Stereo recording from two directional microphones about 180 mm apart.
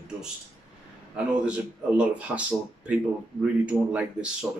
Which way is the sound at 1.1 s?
5° right (ahead or behind).